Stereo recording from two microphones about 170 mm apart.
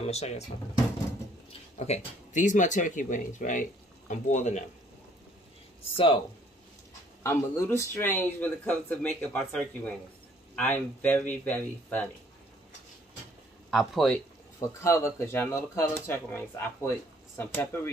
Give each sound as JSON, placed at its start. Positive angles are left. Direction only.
{"t": 0.0, "sound": "speech", "side_deg": 40}
{"t": 1.8, "sound": "speech", "side_deg": 45}
{"t": 7.2, "sound": "speech", "side_deg": 15}
{"t": 13.7, "sound": "speech", "side_deg": 0}
{"t": 14.6, "sound": "speech", "side_deg": 15}